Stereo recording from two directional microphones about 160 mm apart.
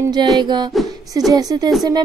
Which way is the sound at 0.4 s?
30° right (ahead or behind).